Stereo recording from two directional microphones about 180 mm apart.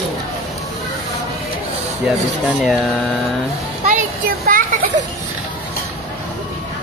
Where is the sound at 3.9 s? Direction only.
50° right (ahead or behind).